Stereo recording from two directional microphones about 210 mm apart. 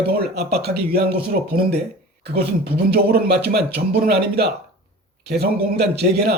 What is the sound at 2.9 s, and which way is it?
A man's voice, 50° right (ahead or behind).